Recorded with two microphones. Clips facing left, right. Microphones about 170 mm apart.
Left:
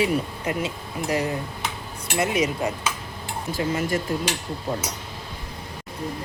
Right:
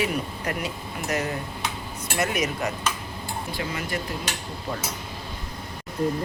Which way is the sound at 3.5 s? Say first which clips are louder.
Left 7 dB; 45° left (ahead or behind).